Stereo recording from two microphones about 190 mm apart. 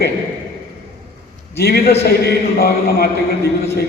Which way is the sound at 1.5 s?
55° left (ahead or behind).